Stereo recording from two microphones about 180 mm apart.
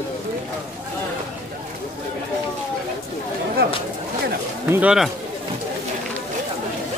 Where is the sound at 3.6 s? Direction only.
60° right (ahead or behind).